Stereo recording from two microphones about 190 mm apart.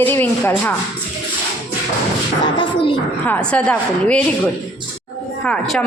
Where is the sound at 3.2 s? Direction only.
5° left (ahead or behind).